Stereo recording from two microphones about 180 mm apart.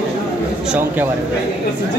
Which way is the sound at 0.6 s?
10° right (ahead or behind).